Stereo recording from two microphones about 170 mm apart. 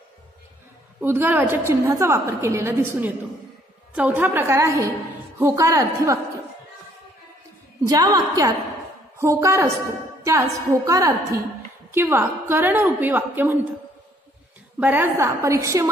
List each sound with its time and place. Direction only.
1.0 s a woman's voice: 10° right (ahead or behind)
7.8 s a woman's voice: 20° right (ahead or behind)
14.8 s a woman's voice: 10° right (ahead or behind)